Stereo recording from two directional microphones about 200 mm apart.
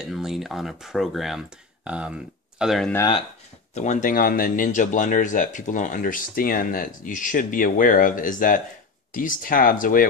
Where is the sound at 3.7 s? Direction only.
35° left (ahead or behind).